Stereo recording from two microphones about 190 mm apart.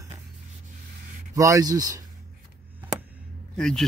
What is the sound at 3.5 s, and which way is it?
Speech, 5° left (ahead or behind).